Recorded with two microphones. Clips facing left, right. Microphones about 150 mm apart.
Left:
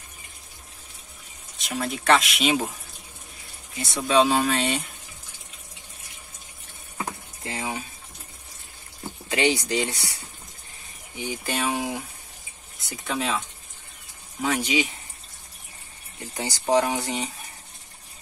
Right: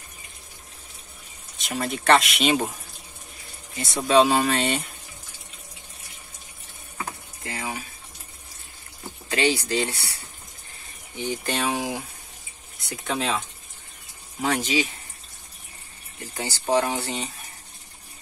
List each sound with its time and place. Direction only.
1.6 s speech: centre (ahead or behind)
3.7 s speech: centre (ahead or behind)
7.4 s speech: 20° left (ahead or behind)
9.3 s speech: 15° left (ahead or behind)
11.1 s speech: 10° left (ahead or behind)
14.6 s speech: 15° left (ahead or behind)
16.3 s speech: 20° left (ahead or behind)